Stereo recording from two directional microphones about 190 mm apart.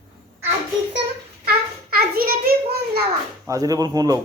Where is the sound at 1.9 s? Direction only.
50° right (ahead or behind).